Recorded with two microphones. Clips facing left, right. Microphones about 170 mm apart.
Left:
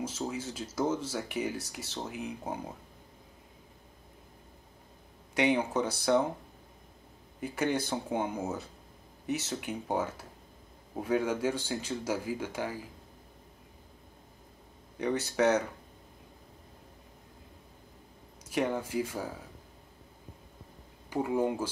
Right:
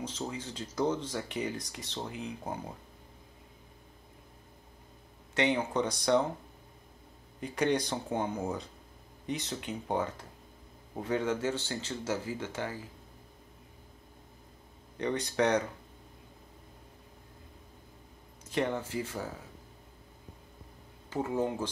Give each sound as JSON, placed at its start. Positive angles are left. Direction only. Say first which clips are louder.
{"t": 0.0, "sound": "speech", "louder": "left 3 dB", "side_deg": 10}
{"t": 5.3, "sound": "speech", "louder": "left 2 dB", "side_deg": 10}
{"t": 7.3, "sound": "speech", "louder": "right 1 dB", "side_deg": 5}
{"t": 15.0, "sound": "speech", "louder": "left 1 dB", "side_deg": 5}
{"t": 18.5, "sound": "speech", "louder": "left 1 dB", "side_deg": 10}
{"t": 21.1, "sound": "speech", "louder": "left 2 dB", "side_deg": 10}